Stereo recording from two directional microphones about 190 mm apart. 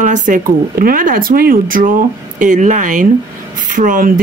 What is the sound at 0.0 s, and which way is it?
Speech, 40° right (ahead or behind).